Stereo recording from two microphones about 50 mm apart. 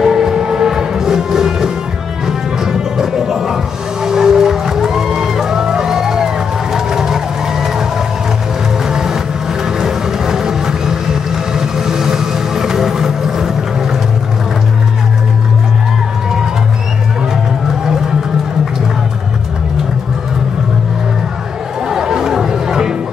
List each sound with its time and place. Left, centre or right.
0.0 s music: centre
8.8 s music: centre
9.8 s vehicle: centre
21.8 s chatter: centre